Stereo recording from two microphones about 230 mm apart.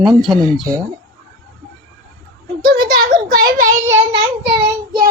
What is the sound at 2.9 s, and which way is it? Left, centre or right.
Child singing, right.